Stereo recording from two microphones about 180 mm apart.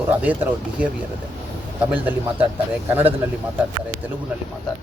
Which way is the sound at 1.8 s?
10° right (ahead or behind).